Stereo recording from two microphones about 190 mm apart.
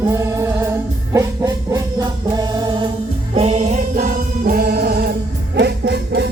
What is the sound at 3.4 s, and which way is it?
Music, 35° right (ahead or behind).